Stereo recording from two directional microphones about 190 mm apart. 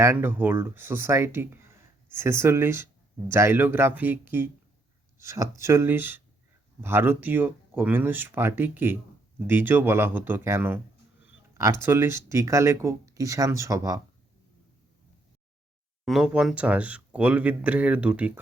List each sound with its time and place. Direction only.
0.0 s speech: 10° right (ahead or behind)
16.0 s speech: centre (ahead or behind)